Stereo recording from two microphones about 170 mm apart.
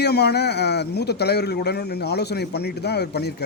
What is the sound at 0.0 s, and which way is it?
Speech, 75° left (ahead or behind).